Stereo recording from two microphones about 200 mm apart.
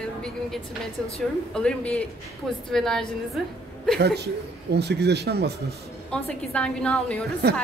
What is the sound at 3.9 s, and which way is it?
A man's voice, 55° right (ahead or behind).